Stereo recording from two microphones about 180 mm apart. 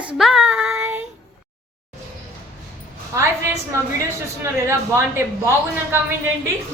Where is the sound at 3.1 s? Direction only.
15° right (ahead or behind).